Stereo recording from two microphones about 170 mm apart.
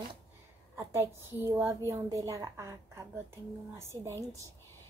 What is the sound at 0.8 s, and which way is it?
A woman's voice, 15° right (ahead or behind).